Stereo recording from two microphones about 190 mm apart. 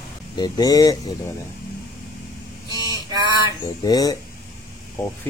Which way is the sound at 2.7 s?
20° right (ahead or behind).